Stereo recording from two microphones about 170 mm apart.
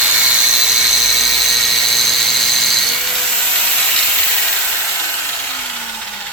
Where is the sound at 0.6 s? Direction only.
5° right (ahead or behind).